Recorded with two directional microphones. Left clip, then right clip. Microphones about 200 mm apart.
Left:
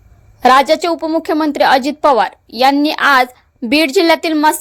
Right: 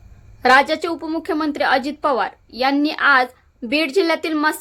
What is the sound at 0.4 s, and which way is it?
A woman's voice, 30° left (ahead or behind).